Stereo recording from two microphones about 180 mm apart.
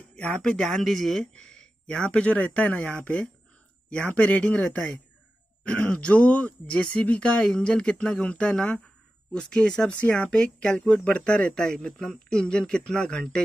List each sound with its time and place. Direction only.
0.1 s speech: 5° left (ahead or behind)